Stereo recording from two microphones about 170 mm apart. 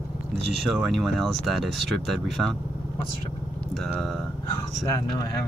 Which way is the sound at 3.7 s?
Centre (ahead or behind).